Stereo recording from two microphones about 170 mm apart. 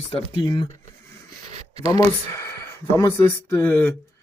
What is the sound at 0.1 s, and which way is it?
Speech, 30° left (ahead or behind).